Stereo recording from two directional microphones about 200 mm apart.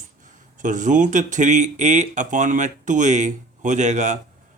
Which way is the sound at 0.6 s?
40° right (ahead or behind).